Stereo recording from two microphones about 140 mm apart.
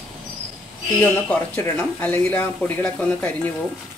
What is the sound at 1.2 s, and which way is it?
Speech, 10° left (ahead or behind).